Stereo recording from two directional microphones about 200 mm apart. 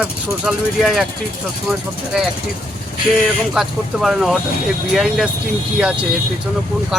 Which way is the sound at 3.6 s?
Centre (ahead or behind).